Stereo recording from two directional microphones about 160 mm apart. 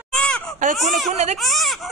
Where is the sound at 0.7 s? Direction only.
Centre (ahead or behind).